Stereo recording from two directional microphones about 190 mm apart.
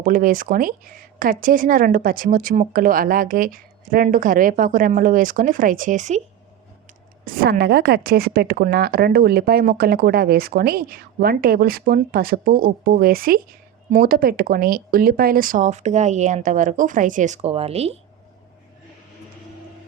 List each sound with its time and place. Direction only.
0.0 s a woman's voice: 45° right (ahead or behind)
7.3 s a woman's voice: 50° right (ahead or behind); by 17.9 s 35° right (ahead or behind)